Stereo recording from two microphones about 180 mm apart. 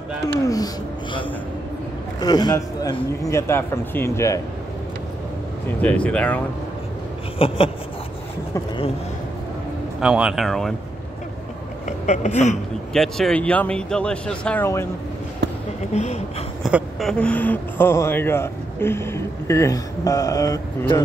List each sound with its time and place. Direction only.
0.3 s speech: 20° left (ahead or behind)
2.1 s speech: 25° left (ahead or behind)
5.8 s speech: 10° left (ahead or behind)
7.3 s speech: 30° left (ahead or behind)
9.9 s speech: 5° right (ahead or behind)
12.1 s speech: 40° left (ahead or behind)
12.9 s speech: centre (ahead or behind)
15.4 s basketball bounce: 75° right (ahead or behind)
15.9 s speech: 35° left (ahead or behind)
16.6 s speech: centre (ahead or behind); by 21.0 s 20° left (ahead or behind)